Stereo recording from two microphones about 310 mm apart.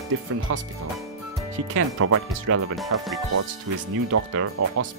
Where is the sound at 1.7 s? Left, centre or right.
Right.